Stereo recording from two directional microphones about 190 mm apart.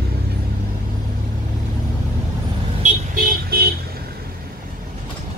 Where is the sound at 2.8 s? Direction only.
40° right (ahead or behind).